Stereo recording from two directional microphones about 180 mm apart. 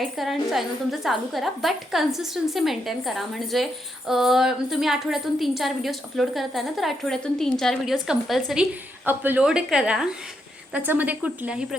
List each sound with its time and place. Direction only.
0.0 s a woman's voice: centre (ahead or behind)